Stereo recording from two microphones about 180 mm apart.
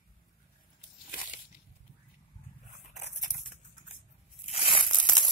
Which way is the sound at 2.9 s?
40° left (ahead or behind).